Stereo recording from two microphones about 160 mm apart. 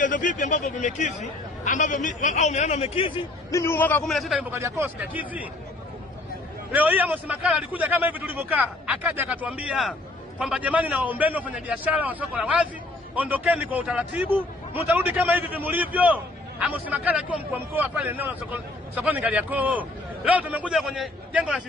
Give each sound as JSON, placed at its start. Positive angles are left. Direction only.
{"t": 0.0, "sound": "speech", "side_deg": 55}
{"t": 3.5, "sound": "a man's voice", "side_deg": 15}
{"t": 4.0, "sound": "a man's voice", "side_deg": 0}
{"t": 4.5, "sound": "a man's voice", "side_deg": -15}
{"t": 6.7, "sound": "a man's voice", "side_deg": -10}